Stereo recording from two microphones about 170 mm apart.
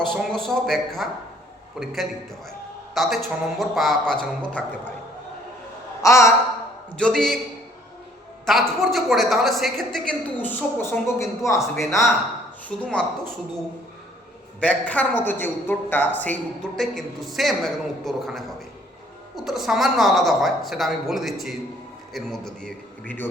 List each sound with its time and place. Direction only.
0.0 s a woman's voice: 5° left (ahead or behind)
2.5 s a sound: centre (ahead or behind)
3.6 s a woman's voice: centre (ahead or behind)
6.0 s a woman's voice: 15° left (ahead or behind)
6.9 s a woman's voice: 5° left (ahead or behind)
8.4 s a woman's voice: centre (ahead or behind); by 12.0 s 15° left (ahead or behind)
12.6 s a woman's voice: 5° left (ahead or behind)
14.6 s a man's voice: 10° left (ahead or behind)
19.5 s a woman's voice: centre (ahead or behind)